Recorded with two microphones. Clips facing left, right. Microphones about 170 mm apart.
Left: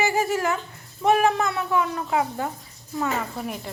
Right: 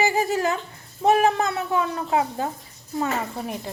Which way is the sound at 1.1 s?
30° right (ahead or behind).